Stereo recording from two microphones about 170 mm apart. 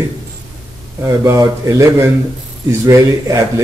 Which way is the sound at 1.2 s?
15° right (ahead or behind).